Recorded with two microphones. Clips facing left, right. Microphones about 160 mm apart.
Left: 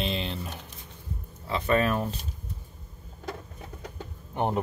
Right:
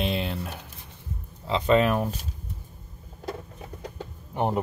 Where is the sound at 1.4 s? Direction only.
20° right (ahead or behind).